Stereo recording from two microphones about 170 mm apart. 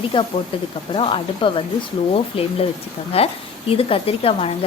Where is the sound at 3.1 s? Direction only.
35° left (ahead or behind).